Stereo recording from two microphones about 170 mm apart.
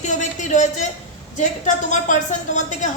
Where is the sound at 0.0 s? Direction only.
45° left (ahead or behind).